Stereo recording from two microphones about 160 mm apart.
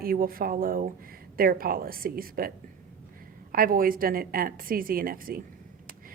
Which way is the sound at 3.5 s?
65° right (ahead or behind).